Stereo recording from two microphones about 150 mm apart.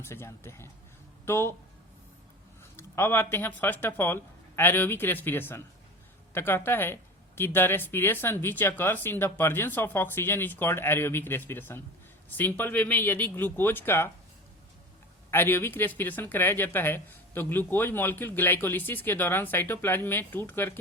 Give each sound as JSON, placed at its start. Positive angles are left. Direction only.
{"t": 0.0, "sound": "speech", "side_deg": 15}
{"t": 2.7, "sound": "speech", "side_deg": 15}
{"t": 15.3, "sound": "speech", "side_deg": 15}